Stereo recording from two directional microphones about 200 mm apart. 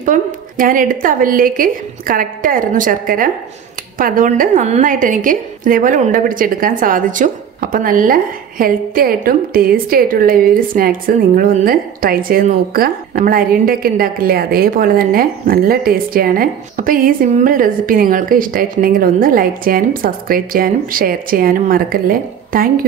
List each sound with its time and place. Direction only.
0.0 s a woman's voice: 40° right (ahead or behind)